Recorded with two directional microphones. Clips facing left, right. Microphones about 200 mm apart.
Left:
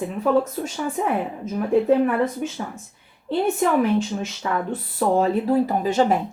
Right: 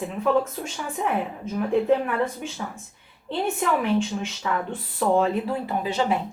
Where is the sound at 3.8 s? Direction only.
40° left (ahead or behind).